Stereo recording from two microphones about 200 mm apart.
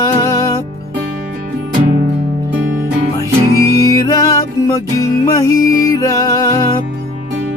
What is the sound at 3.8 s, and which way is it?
Music, 15° left (ahead or behind).